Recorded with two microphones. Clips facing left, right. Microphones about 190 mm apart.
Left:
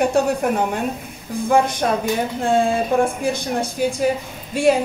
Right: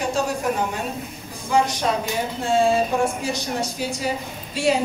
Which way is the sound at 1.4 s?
55° left (ahead or behind).